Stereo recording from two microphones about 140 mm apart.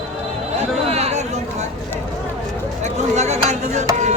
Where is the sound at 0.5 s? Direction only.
50° right (ahead or behind).